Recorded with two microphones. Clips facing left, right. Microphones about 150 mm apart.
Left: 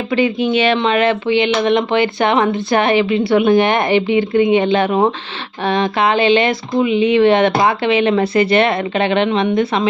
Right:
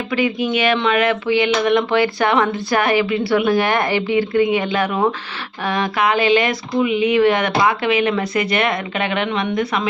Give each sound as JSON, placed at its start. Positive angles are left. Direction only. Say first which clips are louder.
{"t": 0.1, "sound": "speech", "louder": "left 4 dB", "side_deg": 30}